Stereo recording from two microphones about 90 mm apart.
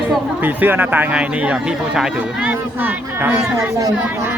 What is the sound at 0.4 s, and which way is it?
Speech, 20° right (ahead or behind).